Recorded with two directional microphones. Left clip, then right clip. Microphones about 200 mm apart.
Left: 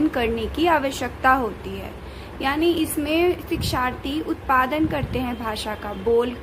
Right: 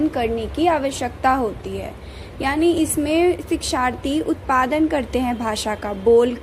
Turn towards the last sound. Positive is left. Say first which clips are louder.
# right 6 dB
turn(degrees=-25)  # may be behind; listen again after turning